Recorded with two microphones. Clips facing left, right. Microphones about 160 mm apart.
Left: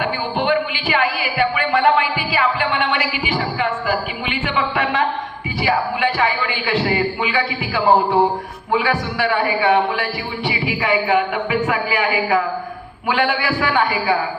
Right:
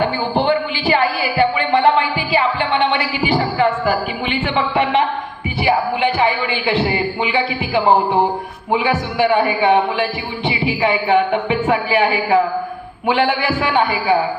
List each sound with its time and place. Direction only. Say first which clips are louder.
0.0 s music: right 4 dB; 35° right (ahead or behind)
4.3 s speech: right 2 dB; 30° right (ahead or behind)